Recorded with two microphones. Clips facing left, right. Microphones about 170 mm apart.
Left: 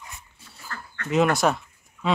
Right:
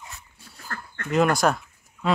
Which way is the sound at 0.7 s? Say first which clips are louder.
Right 2 dB; 50° right (ahead or behind).